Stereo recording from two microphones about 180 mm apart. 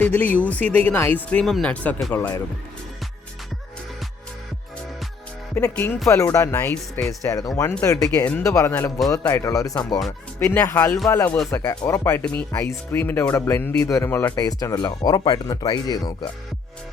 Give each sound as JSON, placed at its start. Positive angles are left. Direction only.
{"t": 0.0, "sound": "speech", "side_deg": 10}
{"t": 5.5, "sound": "speech", "side_deg": 10}
{"t": 11.5, "sound": "speech", "side_deg": 20}